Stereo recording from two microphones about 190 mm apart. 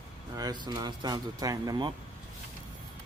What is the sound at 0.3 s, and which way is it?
Speech, 20° right (ahead or behind).